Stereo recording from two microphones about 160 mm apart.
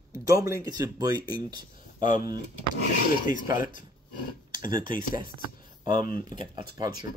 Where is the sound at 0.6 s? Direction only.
25° right (ahead or behind).